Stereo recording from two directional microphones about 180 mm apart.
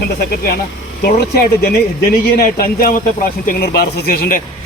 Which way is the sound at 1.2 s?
55° left (ahead or behind).